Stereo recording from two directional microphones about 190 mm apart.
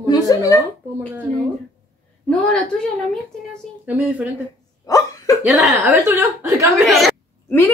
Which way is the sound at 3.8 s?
10° right (ahead or behind).